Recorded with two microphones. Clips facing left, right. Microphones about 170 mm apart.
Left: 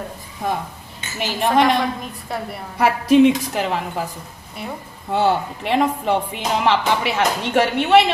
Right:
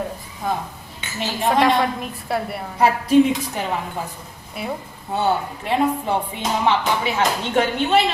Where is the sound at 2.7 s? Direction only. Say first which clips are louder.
Left 1 dB; 80° left.